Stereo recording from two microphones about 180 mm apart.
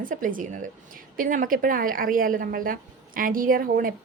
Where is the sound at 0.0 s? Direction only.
50° right (ahead or behind).